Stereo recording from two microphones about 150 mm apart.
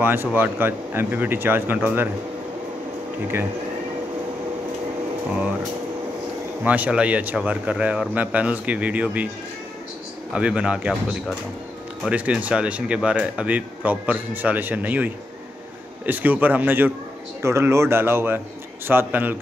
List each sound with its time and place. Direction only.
0.0 s speech: 15° right (ahead or behind)
6.6 s speech: 10° right (ahead or behind)
10.3 s speech: 5° right (ahead or behind)
16.1 s speech: 10° right (ahead or behind)